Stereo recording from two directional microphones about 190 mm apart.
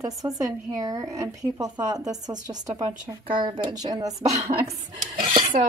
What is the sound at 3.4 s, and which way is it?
Speech, 25° right (ahead or behind).